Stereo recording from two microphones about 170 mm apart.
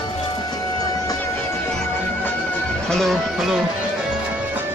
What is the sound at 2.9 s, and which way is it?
Music, centre (ahead or behind).